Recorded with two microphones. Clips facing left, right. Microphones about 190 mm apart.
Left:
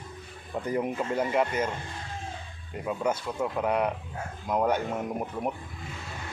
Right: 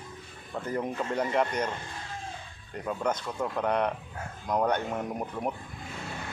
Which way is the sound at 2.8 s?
5° left (ahead or behind).